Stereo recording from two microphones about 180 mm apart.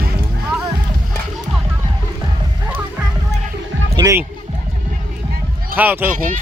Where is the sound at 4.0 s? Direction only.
15° right (ahead or behind).